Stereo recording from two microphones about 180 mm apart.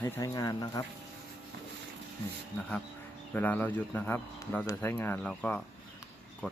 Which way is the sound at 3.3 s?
10° left (ahead or behind).